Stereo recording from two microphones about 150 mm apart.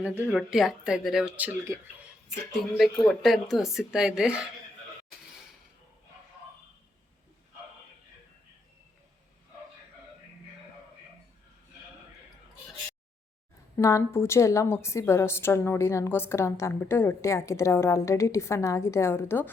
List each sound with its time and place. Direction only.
0.3 s speech: centre (ahead or behind)
2.7 s speech: centre (ahead or behind)
13.7 s a woman's voice: 20° left (ahead or behind)